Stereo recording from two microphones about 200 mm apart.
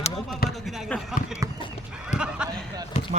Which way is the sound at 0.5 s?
Centre (ahead or behind).